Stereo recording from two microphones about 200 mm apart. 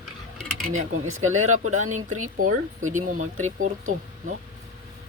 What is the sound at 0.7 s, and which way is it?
Speech, 35° right (ahead or behind).